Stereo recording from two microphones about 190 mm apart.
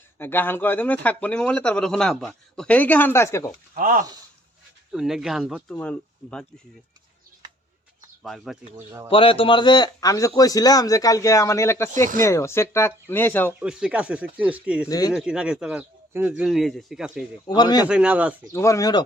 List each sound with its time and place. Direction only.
0.2 s speech: 10° left (ahead or behind)
3.8 s speech: 45° right (ahead or behind)
4.9 s speech: centre (ahead or behind)
8.2 s speech: centre (ahead or behind)
9.0 s a man's voice: 30° left (ahead or behind); by 13.5 s 10° left (ahead or behind)
13.5 s speech: 5° right (ahead or behind)
14.8 s a man's voice: 20° left (ahead or behind)
15.1 s speech: 5° right (ahead or behind)
17.4 s a man's voice: 20° left (ahead or behind)
17.8 s speech: 5° right (ahead or behind)
18.5 s speech: 15° left (ahead or behind)